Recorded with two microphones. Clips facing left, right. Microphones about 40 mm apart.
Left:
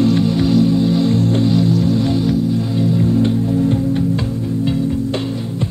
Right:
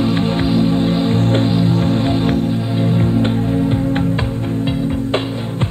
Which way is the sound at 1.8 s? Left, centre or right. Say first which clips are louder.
Even; right.